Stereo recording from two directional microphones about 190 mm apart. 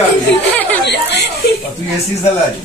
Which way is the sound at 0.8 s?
60° left (ahead or behind).